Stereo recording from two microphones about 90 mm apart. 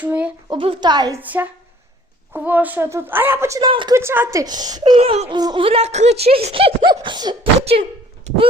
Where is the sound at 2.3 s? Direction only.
15° right (ahead or behind).